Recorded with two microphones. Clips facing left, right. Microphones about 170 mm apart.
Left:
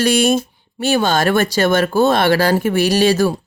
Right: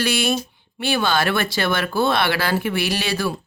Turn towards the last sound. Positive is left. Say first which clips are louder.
# left 9 dB
turn(degrees=45)  # may be behind; listen again after turning